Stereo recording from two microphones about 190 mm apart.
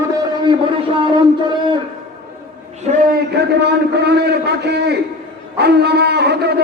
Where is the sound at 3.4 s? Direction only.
60° right (ahead or behind).